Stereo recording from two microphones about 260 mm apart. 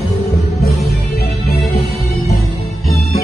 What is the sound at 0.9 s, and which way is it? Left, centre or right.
Music, left.